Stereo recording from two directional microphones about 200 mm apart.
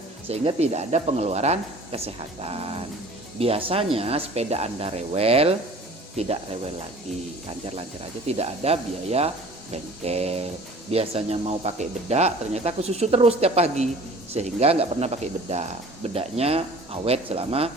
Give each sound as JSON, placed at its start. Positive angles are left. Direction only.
{"t": 0.3, "sound": "speech", "side_deg": -30}
{"t": 8.3, "sound": "speech", "side_deg": -30}